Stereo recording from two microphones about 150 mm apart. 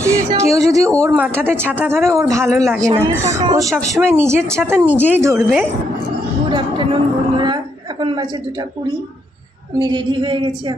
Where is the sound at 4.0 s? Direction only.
15° right (ahead or behind).